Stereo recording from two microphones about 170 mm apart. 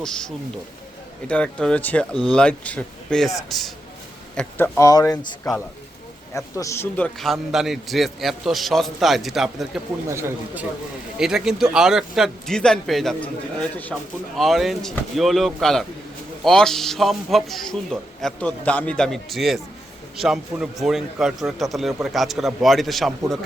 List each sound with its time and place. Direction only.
0.0 s a man's voice: 5° left (ahead or behind)
4.4 s speech: 10° left (ahead or behind)
6.3 s a man's voice: 15° left (ahead or behind); by 9.8 s centre (ahead or behind)
10.1 s a man's voice: 15° right (ahead or behind); by 23.4 s centre (ahead or behind)